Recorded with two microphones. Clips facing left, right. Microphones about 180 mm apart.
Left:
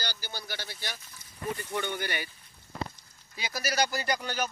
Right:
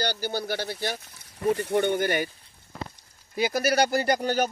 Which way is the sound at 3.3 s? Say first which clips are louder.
Right 8 dB; 55° right (ahead or behind).